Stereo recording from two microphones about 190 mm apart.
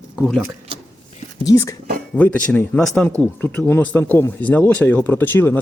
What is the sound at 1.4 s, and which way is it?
Speech, 15° left (ahead or behind).